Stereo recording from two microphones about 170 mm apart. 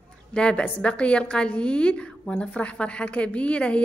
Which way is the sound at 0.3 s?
5° left (ahead or behind).